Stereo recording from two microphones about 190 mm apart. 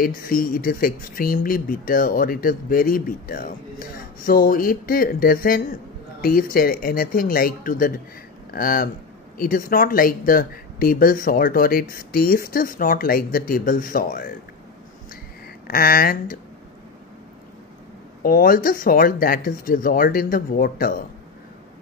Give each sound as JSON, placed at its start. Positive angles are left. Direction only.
{"t": 0.0, "sound": "speech", "side_deg": 50}
{"t": 15.6, "sound": "speech", "side_deg": 50}
{"t": 18.2, "sound": "speech", "side_deg": 50}